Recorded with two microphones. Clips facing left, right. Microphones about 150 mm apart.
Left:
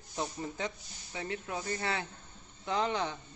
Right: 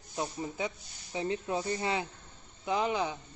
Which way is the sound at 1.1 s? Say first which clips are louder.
Right 5 dB; 25° right (ahead or behind).